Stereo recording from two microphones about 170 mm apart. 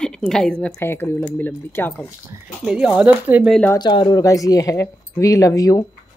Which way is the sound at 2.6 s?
5° right (ahead or behind).